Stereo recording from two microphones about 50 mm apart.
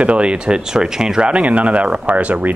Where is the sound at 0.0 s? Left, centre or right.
Right.